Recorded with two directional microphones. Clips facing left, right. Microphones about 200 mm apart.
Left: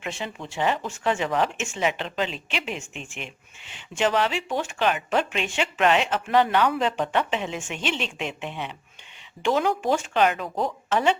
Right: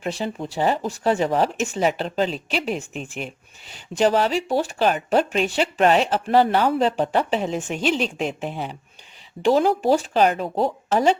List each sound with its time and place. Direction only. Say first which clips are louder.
0.0 s speech: right 6 dB; 35° right (ahead or behind)